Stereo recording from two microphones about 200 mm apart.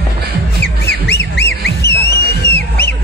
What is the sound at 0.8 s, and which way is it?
Squawk, 55° left (ahead or behind).